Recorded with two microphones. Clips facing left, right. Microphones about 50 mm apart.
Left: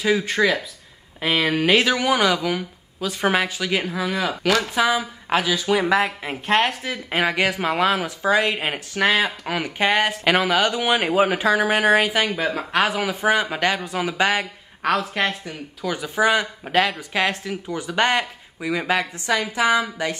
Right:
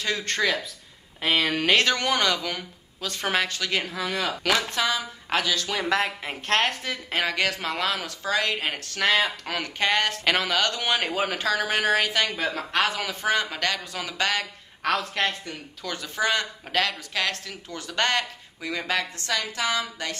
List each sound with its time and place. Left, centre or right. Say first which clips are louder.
0.0 s a woman's voice: left 6 dB; centre
14.9 s a woman's voice: left 4 dB; centre